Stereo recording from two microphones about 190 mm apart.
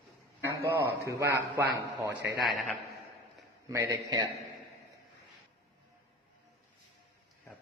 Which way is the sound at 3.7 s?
20° right (ahead or behind).